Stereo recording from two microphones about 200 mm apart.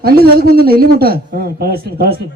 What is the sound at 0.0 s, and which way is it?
A man's voice, 50° right (ahead or behind).